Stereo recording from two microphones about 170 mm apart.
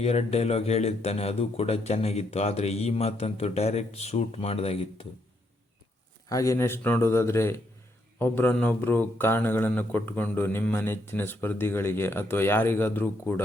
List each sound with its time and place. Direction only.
0.0 s speech: 40° left (ahead or behind)
6.2 s speech: 20° left (ahead or behind)